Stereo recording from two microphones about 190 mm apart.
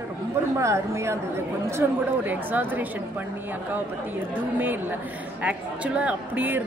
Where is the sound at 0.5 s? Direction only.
15° right (ahead or behind).